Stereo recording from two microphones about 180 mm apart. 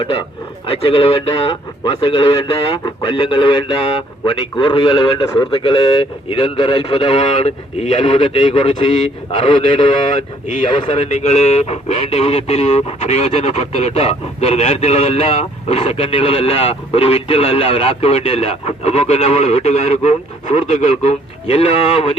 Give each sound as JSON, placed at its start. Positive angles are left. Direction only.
{"t": 0.7, "sound": "a man's voice", "side_deg": 30}
{"t": 10.5, "sound": "speech", "side_deg": 40}